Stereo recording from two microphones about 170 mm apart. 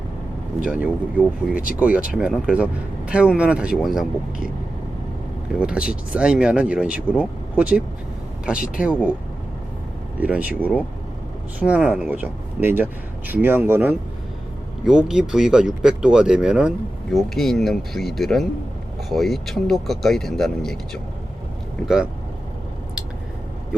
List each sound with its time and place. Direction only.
0.6 s speech: 5° right (ahead or behind)
5.5 s speech: 5° right (ahead or behind)
8.5 s speech: 55° left (ahead or behind)
8.8 s speech: 5° right (ahead or behind)
10.2 s speech: 10° right (ahead or behind)